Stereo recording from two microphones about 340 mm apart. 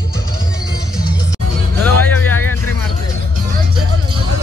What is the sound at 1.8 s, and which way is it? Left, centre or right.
Music, centre.